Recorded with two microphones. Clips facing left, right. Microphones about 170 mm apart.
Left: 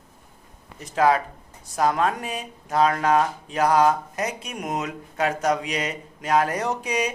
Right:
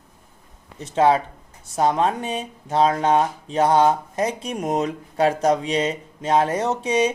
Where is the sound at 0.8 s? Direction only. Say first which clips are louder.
Right 2 dB; 25° right (ahead or behind).